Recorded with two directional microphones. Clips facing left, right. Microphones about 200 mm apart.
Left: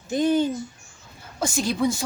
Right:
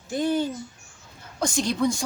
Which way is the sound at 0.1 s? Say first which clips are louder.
Left 3 dB; 20° left (ahead or behind).